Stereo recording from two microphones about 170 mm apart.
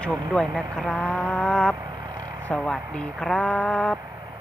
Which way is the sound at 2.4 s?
5° left (ahead or behind).